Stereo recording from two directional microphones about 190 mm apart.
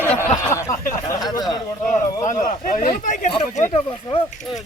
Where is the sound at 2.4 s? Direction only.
45° left (ahead or behind).